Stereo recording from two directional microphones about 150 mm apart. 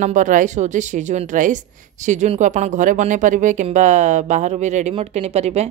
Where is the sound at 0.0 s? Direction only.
55° right (ahead or behind).